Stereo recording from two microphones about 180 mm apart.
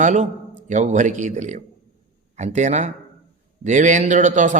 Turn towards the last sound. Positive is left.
turn(degrees=-45)  # may be behind; listen again after turning